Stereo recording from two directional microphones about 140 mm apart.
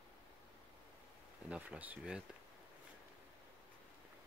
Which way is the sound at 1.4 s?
10° right (ahead or behind).